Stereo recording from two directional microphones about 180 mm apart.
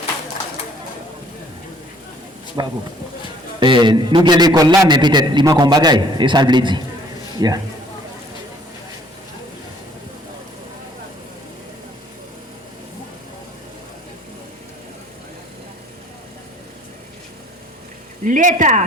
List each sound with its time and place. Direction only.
2.6 s a man's voice: 20° right (ahead or behind)
18.2 s speech: 45° right (ahead or behind)